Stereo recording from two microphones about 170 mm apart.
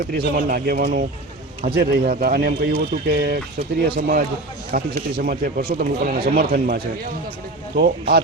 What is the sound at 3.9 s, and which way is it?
A man's voice, 60° right (ahead or behind).